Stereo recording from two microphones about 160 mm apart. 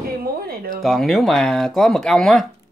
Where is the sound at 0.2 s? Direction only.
65° right (ahead or behind).